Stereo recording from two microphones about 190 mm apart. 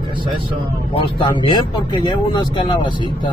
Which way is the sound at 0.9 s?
25° left (ahead or behind).